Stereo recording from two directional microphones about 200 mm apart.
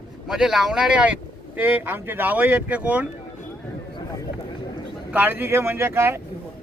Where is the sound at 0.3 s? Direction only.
Centre (ahead or behind).